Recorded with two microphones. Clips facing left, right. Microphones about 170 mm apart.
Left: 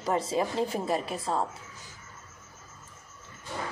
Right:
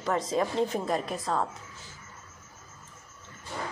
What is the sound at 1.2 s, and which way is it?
Speech, 25° left (ahead or behind).